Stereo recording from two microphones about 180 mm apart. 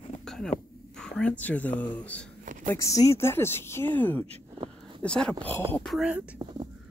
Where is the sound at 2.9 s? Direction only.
15° left (ahead or behind); by 6.2 s centre (ahead or behind).